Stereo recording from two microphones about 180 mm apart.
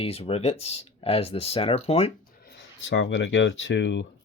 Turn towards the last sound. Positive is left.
turn(degrees=85)